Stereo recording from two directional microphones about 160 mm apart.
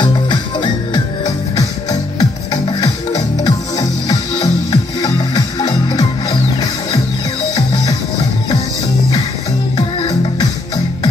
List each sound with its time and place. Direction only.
0.0 s music: 30° left (ahead or behind)
9.8 s music: 25° left (ahead or behind)